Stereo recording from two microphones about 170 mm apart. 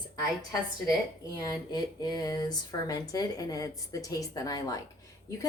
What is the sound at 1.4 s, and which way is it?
A woman's voice, 25° left (ahead or behind).